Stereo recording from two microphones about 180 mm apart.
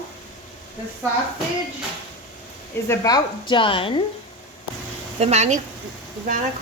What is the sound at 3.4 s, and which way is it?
Speech, 30° left (ahead or behind).